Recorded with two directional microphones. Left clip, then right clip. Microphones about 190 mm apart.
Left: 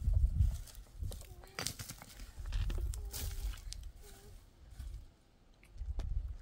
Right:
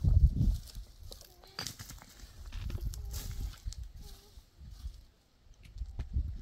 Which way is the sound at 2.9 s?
30° left (ahead or behind).